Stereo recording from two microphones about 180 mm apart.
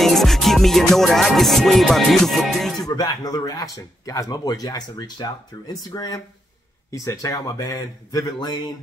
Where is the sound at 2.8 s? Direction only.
20° left (ahead or behind).